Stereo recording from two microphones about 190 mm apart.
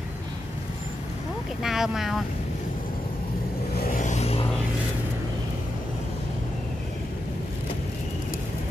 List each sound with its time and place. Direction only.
1.6 s speech: centre (ahead or behind)
3.8 s vehicle: 45° left (ahead or behind)